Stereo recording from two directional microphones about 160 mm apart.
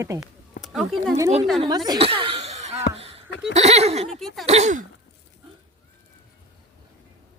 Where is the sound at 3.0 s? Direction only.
40° right (ahead or behind).